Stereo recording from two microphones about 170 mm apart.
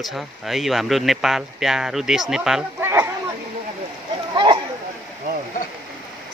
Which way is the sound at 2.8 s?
15° right (ahead or behind).